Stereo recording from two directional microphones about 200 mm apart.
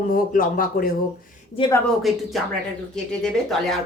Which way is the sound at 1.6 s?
25° left (ahead or behind).